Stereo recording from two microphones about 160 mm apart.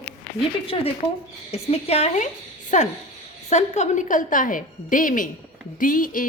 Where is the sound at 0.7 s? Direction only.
35° left (ahead or behind).